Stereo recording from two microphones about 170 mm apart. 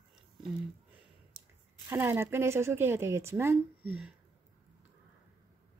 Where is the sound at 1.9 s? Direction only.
15° right (ahead or behind).